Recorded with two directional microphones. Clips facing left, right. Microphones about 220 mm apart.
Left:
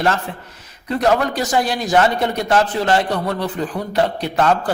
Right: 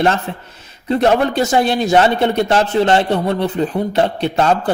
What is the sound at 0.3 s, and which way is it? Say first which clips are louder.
A man's voice: right 4 dB; 25° right (ahead or behind).